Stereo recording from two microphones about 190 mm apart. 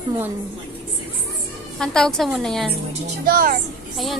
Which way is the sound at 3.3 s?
50° right (ahead or behind).